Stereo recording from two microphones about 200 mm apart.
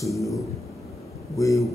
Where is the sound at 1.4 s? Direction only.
15° left (ahead or behind).